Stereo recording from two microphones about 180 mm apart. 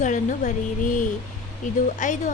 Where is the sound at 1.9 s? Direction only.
45° left (ahead or behind).